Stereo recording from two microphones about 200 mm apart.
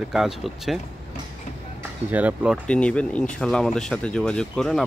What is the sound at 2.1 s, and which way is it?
Speech, 5° right (ahead or behind).